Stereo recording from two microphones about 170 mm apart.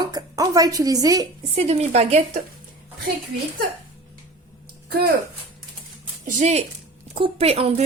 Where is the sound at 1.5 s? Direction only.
40° right (ahead or behind).